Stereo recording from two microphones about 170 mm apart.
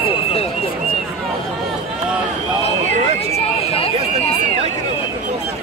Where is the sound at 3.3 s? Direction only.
35° left (ahead or behind).